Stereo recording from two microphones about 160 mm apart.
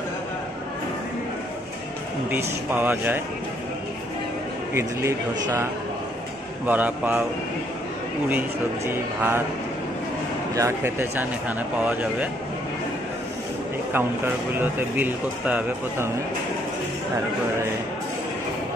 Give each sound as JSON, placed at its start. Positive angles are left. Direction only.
{"t": 2.3, "sound": "speech", "side_deg": -10}
{"t": 4.7, "sound": "speech", "side_deg": -15}
{"t": 8.3, "sound": "speech", "side_deg": -10}
{"t": 10.5, "sound": "speech", "side_deg": -15}
{"t": 13.9, "sound": "speech", "side_deg": -15}